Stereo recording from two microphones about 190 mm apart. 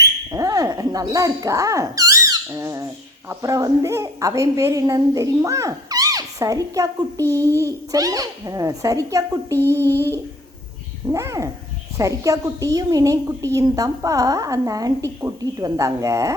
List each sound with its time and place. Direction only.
0.3 s a woman's voice: 20° right (ahead or behind)